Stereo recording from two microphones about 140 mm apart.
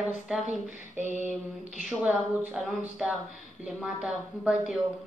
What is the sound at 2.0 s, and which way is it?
A woman's voice, 5° right (ahead or behind).